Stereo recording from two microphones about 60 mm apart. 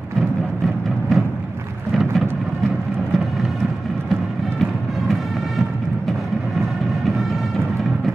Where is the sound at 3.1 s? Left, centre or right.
Centre.